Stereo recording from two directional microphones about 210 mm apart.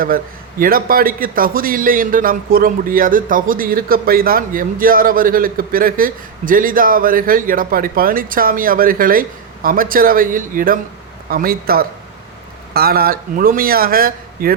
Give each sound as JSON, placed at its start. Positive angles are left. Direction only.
{"t": 0.6, "sound": "a man's voice", "side_deg": -45}